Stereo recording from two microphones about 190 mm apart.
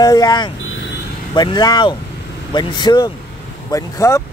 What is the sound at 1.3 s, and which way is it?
Speech, 20° left (ahead or behind).